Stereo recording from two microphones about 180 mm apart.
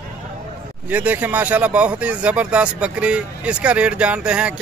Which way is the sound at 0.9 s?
10° right (ahead or behind).